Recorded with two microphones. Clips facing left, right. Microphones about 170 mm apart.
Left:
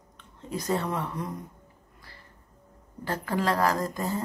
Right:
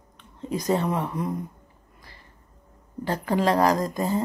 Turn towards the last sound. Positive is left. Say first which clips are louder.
# right 5 dB
turn(degrees=-20)  # may be behind; listen again after turning